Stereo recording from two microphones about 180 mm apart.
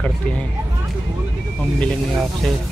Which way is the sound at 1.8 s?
Centre (ahead or behind).